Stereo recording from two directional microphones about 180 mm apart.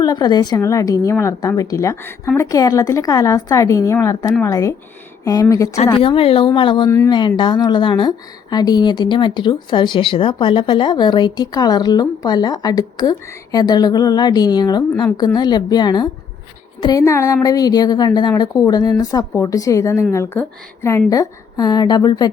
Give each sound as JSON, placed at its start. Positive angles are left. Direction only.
{"t": 0.0, "sound": "a woman's voice", "side_deg": 20}
{"t": 5.9, "sound": "a woman's voice", "side_deg": 30}